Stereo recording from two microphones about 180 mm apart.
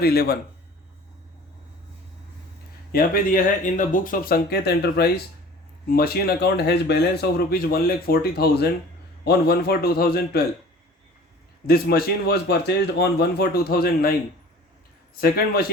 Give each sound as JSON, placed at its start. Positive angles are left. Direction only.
{"t": 0.0, "sound": "speech", "side_deg": 60}
{"t": 2.9, "sound": "speech", "side_deg": 50}
{"t": 11.6, "sound": "speech", "side_deg": 55}